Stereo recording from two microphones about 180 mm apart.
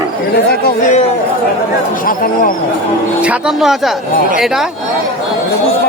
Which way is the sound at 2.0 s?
50° left (ahead or behind).